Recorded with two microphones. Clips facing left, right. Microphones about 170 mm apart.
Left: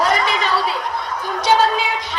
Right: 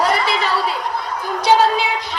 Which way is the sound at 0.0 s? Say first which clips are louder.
Even; 10° right (ahead or behind).